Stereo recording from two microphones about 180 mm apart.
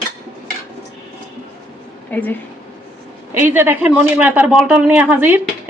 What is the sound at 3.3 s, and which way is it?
Speech, 10° right (ahead or behind).